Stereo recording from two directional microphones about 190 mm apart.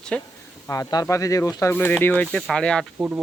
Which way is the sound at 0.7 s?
15° left (ahead or behind).